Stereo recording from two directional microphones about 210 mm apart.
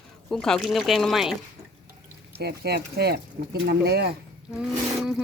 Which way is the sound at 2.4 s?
50° right (ahead or behind).